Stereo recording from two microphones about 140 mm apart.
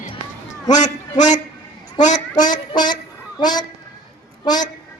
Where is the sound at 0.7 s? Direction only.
60° left (ahead or behind).